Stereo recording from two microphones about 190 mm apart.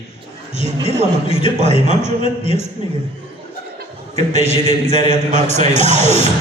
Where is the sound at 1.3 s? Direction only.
30° left (ahead or behind).